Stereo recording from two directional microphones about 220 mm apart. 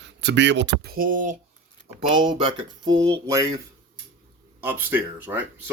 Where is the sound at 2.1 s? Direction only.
20° right (ahead or behind).